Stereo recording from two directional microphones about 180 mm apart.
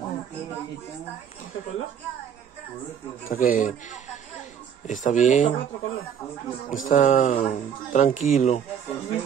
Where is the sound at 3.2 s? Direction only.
50° left (ahead or behind).